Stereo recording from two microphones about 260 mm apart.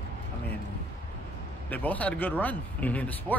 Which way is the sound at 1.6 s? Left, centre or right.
Centre.